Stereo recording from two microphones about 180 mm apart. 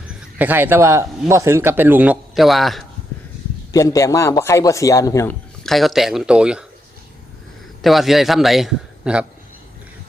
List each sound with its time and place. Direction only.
0.3 s a man's voice: 10° right (ahead or behind)
3.7 s a man's voice: 20° left (ahead or behind)
5.6 s a man's voice: centre (ahead or behind)
7.8 s a man's voice: centre (ahead or behind)